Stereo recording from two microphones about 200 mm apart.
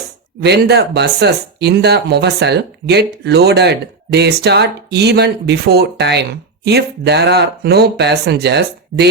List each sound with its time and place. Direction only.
0.4 s speech: 55° right (ahead or behind)